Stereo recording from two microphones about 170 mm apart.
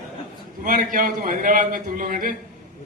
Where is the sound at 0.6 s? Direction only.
55° right (ahead or behind).